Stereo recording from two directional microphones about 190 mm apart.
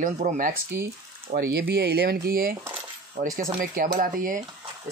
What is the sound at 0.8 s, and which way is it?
Speech, 55° right (ahead or behind).